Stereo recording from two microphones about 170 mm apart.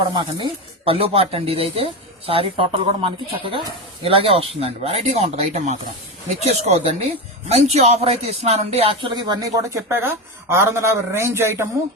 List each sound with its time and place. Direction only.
0.1 s speech: 30° right (ahead or behind)
9.7 s a man's voice: 15° right (ahead or behind)